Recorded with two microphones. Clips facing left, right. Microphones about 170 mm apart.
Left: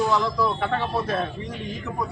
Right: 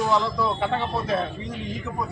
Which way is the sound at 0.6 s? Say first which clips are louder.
Even; 15° right (ahead or behind).